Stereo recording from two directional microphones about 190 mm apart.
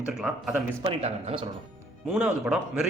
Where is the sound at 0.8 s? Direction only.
30° right (ahead or behind).